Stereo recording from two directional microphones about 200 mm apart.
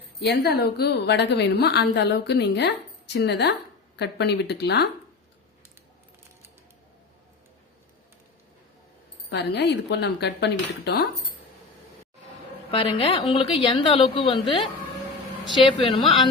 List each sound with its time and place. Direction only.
0.2 s a woman's voice: 55° left (ahead or behind)
9.3 s a woman's voice: 60° left (ahead or behind)
12.7 s a woman's voice: 25° left (ahead or behind)